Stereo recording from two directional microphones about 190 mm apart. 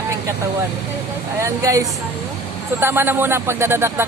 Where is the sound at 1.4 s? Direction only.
15° right (ahead or behind).